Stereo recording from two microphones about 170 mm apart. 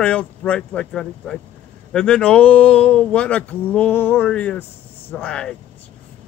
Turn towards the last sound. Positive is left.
turn(degrees=5)  # may be behind; listen again after turning